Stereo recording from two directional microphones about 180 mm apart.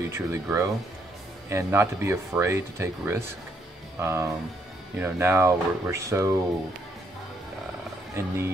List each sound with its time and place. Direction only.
0.1 s speech: 15° right (ahead or behind)
8.1 s speech: 15° right (ahead or behind)